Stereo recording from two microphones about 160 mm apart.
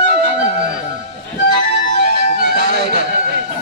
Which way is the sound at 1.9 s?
50° left (ahead or behind).